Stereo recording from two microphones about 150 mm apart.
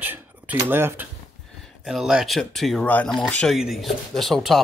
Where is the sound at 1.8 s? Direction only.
5° right (ahead or behind).